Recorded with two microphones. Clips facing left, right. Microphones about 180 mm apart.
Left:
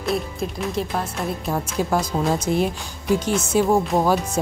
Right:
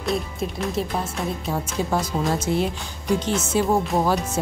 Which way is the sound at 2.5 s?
20° left (ahead or behind).